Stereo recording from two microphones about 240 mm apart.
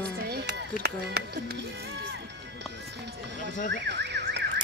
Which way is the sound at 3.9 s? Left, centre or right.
Right.